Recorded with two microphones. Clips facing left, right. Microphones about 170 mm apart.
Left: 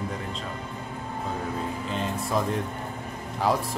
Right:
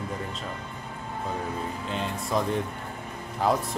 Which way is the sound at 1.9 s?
Centre (ahead or behind).